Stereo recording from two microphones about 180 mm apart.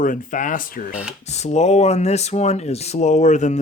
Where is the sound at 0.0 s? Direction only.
45° left (ahead or behind).